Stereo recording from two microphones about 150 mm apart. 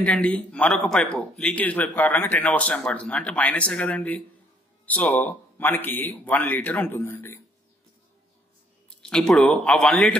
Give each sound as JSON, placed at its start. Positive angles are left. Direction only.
{"t": 0.0, "sound": "speech", "side_deg": 10}
{"t": 9.0, "sound": "speech", "side_deg": 5}